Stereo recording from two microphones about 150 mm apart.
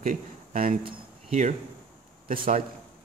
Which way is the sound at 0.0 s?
60° right (ahead or behind).